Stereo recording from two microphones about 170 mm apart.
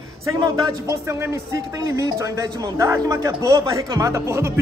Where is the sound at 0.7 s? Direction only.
15° right (ahead or behind).